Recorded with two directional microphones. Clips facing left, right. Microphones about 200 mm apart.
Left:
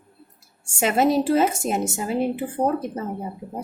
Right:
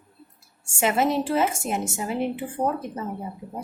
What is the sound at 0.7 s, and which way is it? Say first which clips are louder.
A woman's voice: left 3 dB; 40° left (ahead or behind).